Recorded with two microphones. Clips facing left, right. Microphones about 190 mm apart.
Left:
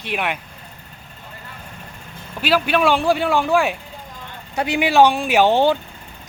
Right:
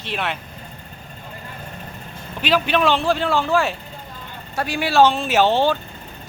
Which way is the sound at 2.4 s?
10° left (ahead or behind).